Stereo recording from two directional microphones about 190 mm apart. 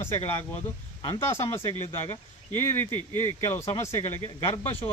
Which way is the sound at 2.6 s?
15° left (ahead or behind).